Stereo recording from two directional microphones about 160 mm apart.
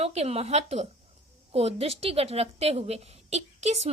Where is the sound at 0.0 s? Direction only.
40° right (ahead or behind).